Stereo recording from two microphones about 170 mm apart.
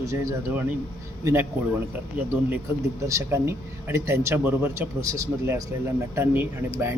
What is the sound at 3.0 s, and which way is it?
Speech, 15° right (ahead or behind).